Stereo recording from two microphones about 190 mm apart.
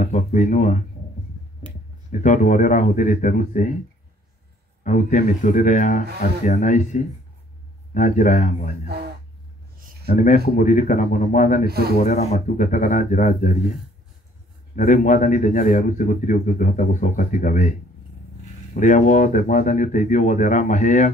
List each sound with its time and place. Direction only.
0.0 s speech: 40° left (ahead or behind)
2.2 s speech: 40° left (ahead or behind)
4.8 s speech: 40° left (ahead or behind)
8.8 s a sound: 60° right (ahead or behind)
10.0 s speech: 40° left (ahead or behind)
11.6 s speech: 55° right (ahead or behind)
12.0 s speech: 35° left (ahead or behind)
14.8 s speech: 45° left (ahead or behind)